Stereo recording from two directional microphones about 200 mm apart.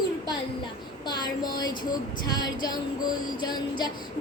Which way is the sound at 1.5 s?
20° left (ahead or behind).